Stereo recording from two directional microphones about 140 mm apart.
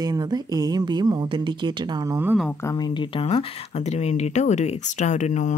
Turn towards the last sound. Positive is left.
turn(degrees=60)  # may be behind; listen again after turning